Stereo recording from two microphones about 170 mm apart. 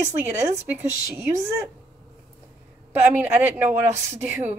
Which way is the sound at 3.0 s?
10° right (ahead or behind).